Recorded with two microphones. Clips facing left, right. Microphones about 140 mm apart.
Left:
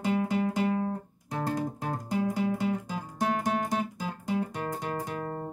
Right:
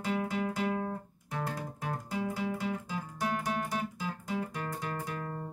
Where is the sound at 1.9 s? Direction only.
40° left (ahead or behind).